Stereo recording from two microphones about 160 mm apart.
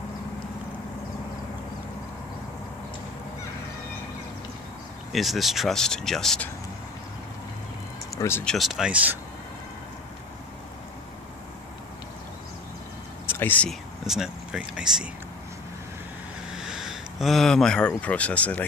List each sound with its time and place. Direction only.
5.1 s speech: centre (ahead or behind)
8.2 s speech: 15° left (ahead or behind)
8.5 s speech: centre (ahead or behind)
13.3 s speech: 10° left (ahead or behind)
14.0 s speech: 5° right (ahead or behind)
16.5 s speech: centre (ahead or behind)